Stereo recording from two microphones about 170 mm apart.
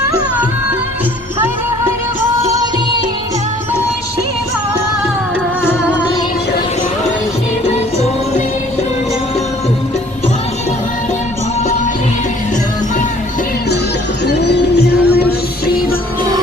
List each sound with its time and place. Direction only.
14.3 s music: 80° left; by 16.0 s 65° left (ahead or behind)